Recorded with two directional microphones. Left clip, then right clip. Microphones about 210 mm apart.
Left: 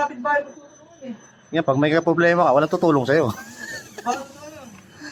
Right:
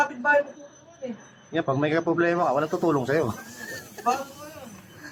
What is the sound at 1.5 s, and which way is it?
Speech, 40° left (ahead or behind).